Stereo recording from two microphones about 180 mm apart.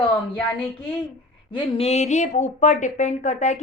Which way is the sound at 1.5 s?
30° left (ahead or behind).